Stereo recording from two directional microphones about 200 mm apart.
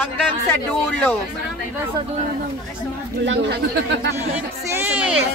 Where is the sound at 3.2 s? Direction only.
60° right (ahead or behind).